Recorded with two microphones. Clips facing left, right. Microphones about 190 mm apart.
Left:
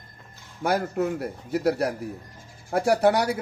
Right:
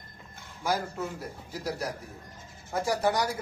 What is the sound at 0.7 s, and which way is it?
A man's voice, 65° left (ahead or behind).